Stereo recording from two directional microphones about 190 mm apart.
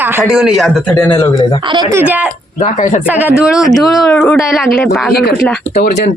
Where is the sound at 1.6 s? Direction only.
25° right (ahead or behind).